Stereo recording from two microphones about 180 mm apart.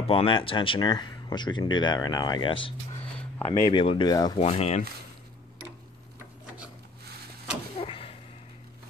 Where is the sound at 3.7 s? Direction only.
30° left (ahead or behind).